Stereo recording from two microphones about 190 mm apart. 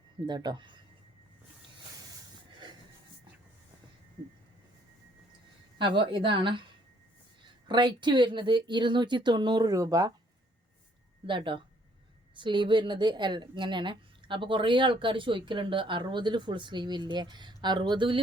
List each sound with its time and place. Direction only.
0.3 s a woman's voice: 25° right (ahead or behind)
5.8 s a woman's voice: 25° right (ahead or behind)
7.7 s a woman's voice: 25° right (ahead or behind)
11.3 s a woman's voice: 25° right (ahead or behind)